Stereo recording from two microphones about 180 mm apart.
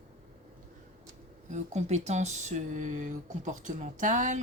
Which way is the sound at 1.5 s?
40° right (ahead or behind).